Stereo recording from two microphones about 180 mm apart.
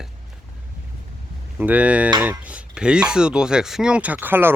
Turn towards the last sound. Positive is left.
turn(degrees=-10)  # may be behind; listen again after turning